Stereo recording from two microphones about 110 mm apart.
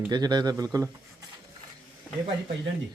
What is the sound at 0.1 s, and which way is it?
Speech, 40° right (ahead or behind).